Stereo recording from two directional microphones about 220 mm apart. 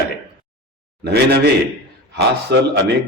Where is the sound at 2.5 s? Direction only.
50° right (ahead or behind).